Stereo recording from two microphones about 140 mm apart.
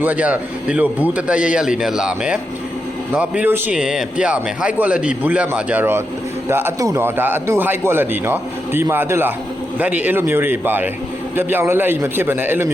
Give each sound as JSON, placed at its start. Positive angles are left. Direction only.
{"t": 0.0, "sound": "a man's voice", "side_deg": -10}